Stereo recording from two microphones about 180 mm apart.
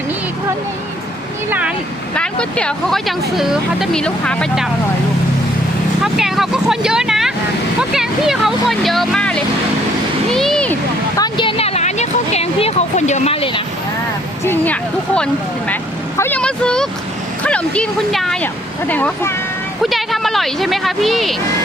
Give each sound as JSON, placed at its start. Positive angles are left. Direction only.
{"t": 1.5, "sound": "speech", "side_deg": -10}
{"t": 2.1, "sound": "speech", "side_deg": 5}
{"t": 6.0, "sound": "speech", "side_deg": 0}
{"t": 10.2, "sound": "a sound", "side_deg": 0}
{"t": 11.2, "sound": "a sound", "side_deg": 25}
{"t": 14.4, "sound": "speech", "side_deg": 10}
{"t": 19.8, "sound": "speech", "side_deg": 0}